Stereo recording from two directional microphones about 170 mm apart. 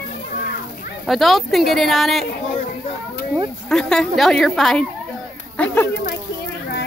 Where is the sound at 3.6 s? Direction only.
5° left (ahead or behind).